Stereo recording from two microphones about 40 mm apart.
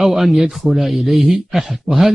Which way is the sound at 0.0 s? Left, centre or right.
Centre.